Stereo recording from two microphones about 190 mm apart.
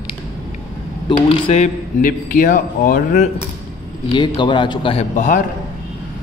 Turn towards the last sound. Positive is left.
turn(degrees=40)  # may be behind; listen again after turning